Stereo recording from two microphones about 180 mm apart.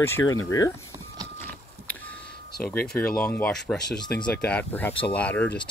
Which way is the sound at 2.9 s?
5° left (ahead or behind).